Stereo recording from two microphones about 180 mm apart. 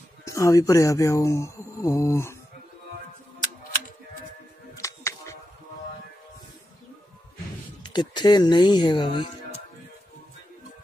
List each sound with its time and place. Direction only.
0.3 s speech: 20° left (ahead or behind)
4.7 s a sound: 15° left (ahead or behind)
7.8 s speech: 25° left (ahead or behind)